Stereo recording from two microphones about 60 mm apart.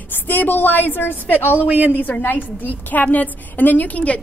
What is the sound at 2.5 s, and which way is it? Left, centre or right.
A woman's voice, left.